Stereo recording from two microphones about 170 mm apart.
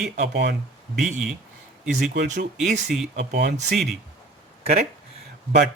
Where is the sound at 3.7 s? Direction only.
Centre (ahead or behind).